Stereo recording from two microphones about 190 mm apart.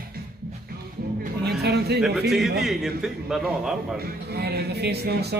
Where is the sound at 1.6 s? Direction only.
60° right (ahead or behind).